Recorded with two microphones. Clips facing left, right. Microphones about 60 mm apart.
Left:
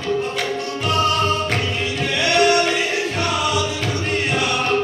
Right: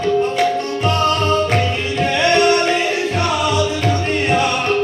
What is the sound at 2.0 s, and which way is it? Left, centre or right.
Music, right.